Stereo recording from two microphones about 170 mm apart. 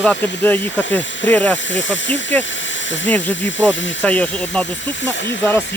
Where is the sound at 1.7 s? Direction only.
90° left.